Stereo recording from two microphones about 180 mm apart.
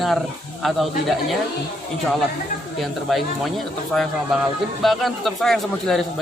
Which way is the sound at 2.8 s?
Centre (ahead or behind).